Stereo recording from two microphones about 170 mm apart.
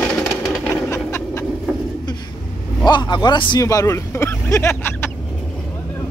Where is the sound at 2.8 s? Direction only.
25° left (ahead or behind).